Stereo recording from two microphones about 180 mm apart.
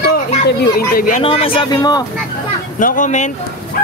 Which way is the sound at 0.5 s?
60° left (ahead or behind).